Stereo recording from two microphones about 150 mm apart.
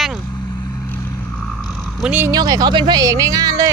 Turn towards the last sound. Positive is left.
turn(degrees=-25)  # may be behind; listen again after turning